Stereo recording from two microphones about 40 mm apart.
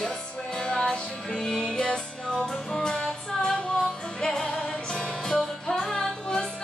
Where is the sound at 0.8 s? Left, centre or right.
Centre.